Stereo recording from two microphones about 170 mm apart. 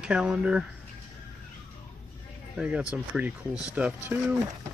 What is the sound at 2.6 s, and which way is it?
Speech, 5° right (ahead or behind).